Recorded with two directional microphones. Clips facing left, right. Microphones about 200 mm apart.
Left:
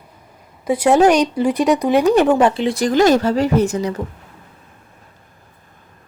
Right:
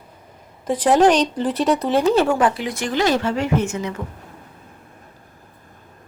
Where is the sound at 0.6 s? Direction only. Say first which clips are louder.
Left 2 dB; 10° left (ahead or behind); by 4.0 s 35° left (ahead or behind).